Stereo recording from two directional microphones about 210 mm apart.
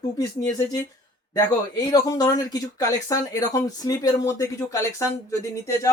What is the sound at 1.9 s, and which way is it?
Speech, 15° left (ahead or behind).